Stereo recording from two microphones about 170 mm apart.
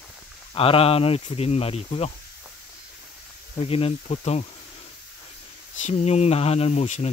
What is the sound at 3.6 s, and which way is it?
Speech, 35° left (ahead or behind).